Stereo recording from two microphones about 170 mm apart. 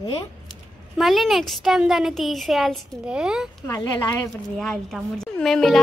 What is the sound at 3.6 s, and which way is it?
Speech, 20° left (ahead or behind).